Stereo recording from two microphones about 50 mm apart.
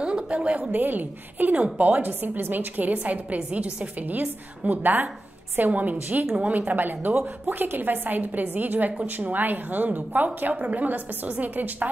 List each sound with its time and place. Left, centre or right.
0.0 s a woman's voice: right
0.7 s a woman's voice: right